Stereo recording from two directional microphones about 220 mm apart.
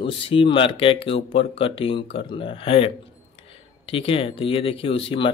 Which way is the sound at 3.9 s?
25° left (ahead or behind).